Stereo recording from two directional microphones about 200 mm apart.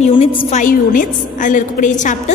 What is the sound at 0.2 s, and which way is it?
A woman's voice, 30° left (ahead or behind).